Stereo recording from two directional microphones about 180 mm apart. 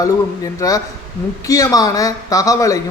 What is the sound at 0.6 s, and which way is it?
A man's voice, 20° left (ahead or behind).